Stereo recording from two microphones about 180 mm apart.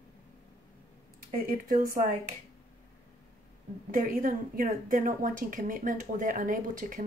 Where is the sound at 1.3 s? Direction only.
50° right (ahead or behind).